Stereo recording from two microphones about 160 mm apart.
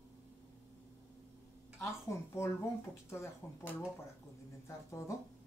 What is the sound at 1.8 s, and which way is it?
Speech, 15° left (ahead or behind).